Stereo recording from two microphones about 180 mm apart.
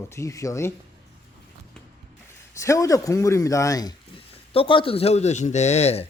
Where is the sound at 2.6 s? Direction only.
20° left (ahead or behind); by 6.1 s 35° left (ahead or behind).